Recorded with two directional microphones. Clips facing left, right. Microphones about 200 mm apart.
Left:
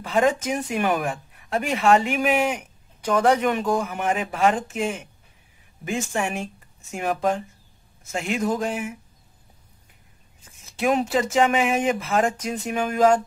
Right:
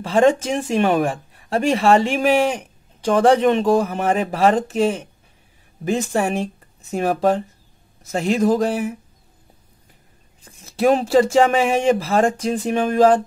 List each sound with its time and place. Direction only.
0.0 s speech: 30° right (ahead or behind)
10.4 s speech: 35° right (ahead or behind)